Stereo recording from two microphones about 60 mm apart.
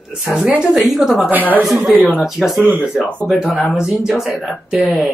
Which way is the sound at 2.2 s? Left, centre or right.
Centre.